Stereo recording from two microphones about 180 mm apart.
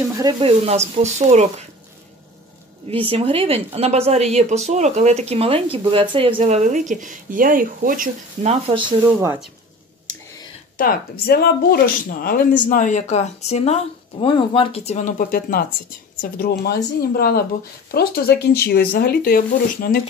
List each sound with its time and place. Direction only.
0.2 s speech: 20° right (ahead or behind)
0.5 s speech: 35° right (ahead or behind)
3.1 s speech: 30° right (ahead or behind)
10.8 s speech: 55° left (ahead or behind)